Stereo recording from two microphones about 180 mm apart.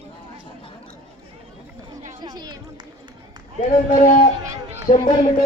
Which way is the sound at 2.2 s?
25° right (ahead or behind).